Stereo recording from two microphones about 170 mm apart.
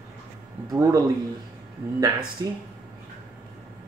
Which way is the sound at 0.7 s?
20° right (ahead or behind).